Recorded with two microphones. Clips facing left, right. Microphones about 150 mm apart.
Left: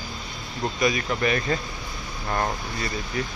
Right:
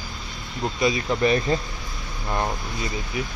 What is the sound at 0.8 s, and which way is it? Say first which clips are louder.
Speech: right 3 dB; 25° right (ahead or behind).